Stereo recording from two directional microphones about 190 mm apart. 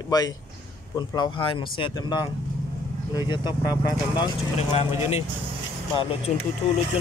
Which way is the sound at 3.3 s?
25° left (ahead or behind).